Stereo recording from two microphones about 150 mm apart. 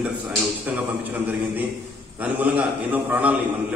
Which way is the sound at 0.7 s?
10° right (ahead or behind).